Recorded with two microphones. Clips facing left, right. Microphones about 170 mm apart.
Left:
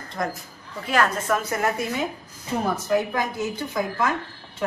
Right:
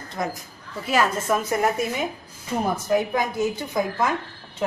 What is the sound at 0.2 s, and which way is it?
A woman's voice, 10° right (ahead or behind).